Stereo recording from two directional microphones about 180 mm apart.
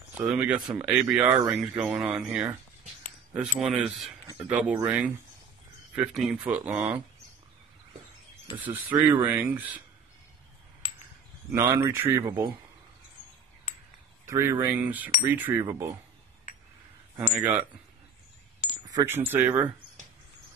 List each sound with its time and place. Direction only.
0.2 s speech: 10° right (ahead or behind)
3.5 s speech: 5° right (ahead or behind)
8.6 s speech: 10° right (ahead or behind)
11.5 s speech: 15° right (ahead or behind)
14.2 s speech: 15° right (ahead or behind)
17.3 s speech: 10° right (ahead or behind)
18.9 s speech: 15° right (ahead or behind)